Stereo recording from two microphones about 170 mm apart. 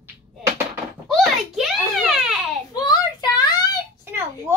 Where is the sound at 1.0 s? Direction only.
Centre (ahead or behind).